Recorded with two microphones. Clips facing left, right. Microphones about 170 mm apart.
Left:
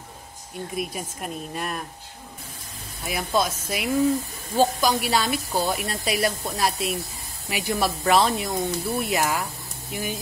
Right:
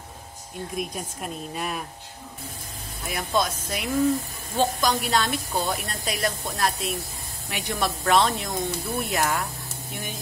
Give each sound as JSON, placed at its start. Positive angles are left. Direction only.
{"t": 0.7, "sound": "a woman's voice", "side_deg": 0}
{"t": 3.1, "sound": "a woman's voice", "side_deg": 0}